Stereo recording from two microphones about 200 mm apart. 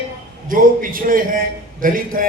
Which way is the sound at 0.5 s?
45° right (ahead or behind).